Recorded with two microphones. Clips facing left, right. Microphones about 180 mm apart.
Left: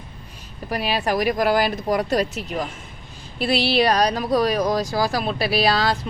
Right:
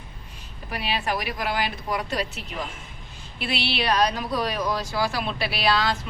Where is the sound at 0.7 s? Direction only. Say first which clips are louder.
Left 5 dB; 40° left (ahead or behind).